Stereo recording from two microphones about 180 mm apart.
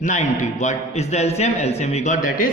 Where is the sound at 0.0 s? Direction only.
40° left (ahead or behind).